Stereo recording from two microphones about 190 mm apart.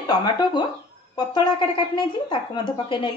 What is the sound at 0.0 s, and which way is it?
Speech, 20° left (ahead or behind).